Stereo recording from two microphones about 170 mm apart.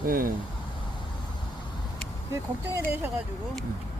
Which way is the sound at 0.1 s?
55° right (ahead or behind).